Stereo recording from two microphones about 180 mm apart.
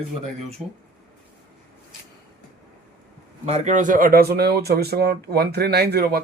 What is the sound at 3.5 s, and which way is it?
Speech, 45° right (ahead or behind).